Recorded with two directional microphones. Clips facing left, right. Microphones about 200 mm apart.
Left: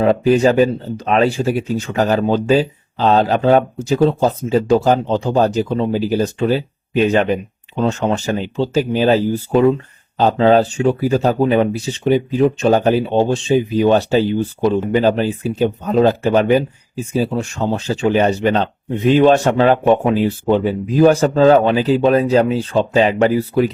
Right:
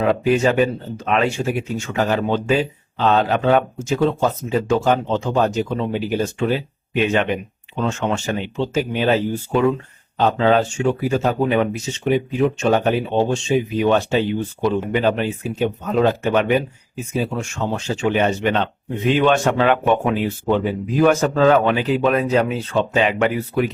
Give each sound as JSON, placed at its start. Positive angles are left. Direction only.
{"t": 0.0, "sound": "speech", "side_deg": 35}